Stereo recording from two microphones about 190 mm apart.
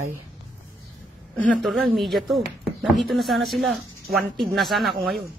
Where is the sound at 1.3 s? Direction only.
5° left (ahead or behind).